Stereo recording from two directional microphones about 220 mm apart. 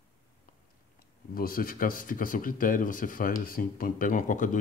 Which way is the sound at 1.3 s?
40° left (ahead or behind).